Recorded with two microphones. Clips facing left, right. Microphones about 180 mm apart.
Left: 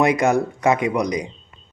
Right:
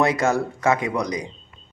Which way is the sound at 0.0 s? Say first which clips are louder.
Left 3 dB; 15° left (ahead or behind).